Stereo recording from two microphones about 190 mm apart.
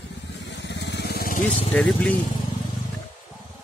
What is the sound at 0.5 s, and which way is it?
Vehicle, 65° left (ahead or behind).